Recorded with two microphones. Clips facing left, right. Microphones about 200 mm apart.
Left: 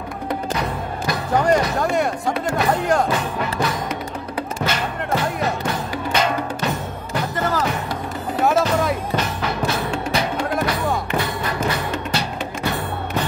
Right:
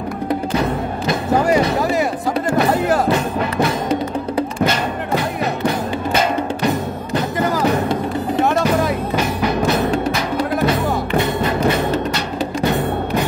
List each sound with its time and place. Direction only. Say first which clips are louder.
1.3 s speech: right 2 dB; 5° right (ahead or behind)
7.3 s music: right 2 dB; 15° right (ahead or behind)
8.5 s music: left 1 dB; centre (ahead or behind)
10.7 s music: right 4 dB; 25° right (ahead or behind)